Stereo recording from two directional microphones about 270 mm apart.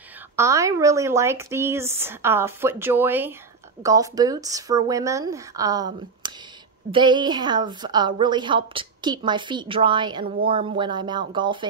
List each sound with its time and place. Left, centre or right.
0.4 s a woman's voice: centre